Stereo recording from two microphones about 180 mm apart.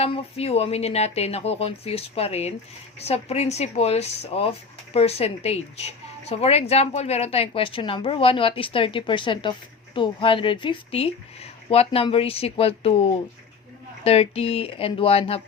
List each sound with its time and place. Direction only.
0.0 s a woman's voice: 35° left (ahead or behind)